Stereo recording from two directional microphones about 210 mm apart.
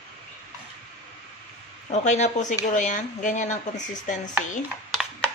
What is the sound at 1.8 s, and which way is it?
Speech, 35° left (ahead or behind).